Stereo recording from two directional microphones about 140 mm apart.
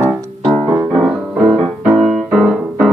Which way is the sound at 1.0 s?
5° right (ahead or behind).